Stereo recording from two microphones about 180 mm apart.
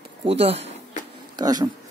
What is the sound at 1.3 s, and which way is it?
Speech, 20° right (ahead or behind).